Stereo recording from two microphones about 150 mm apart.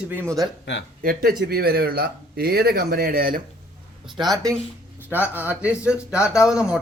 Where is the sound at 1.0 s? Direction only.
85° right.